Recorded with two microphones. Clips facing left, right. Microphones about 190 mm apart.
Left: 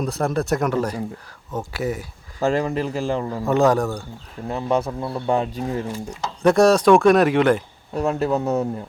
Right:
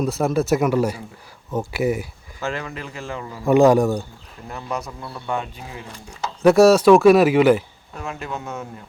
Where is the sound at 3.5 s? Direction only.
10° right (ahead or behind).